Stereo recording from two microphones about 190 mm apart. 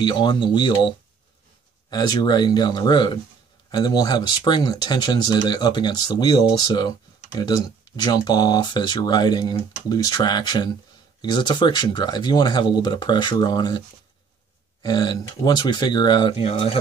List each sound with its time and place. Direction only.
0.0 s speech: 20° left (ahead or behind)